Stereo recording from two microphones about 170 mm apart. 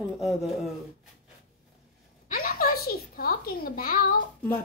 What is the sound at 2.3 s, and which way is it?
A woman's voice, 60° left (ahead or behind).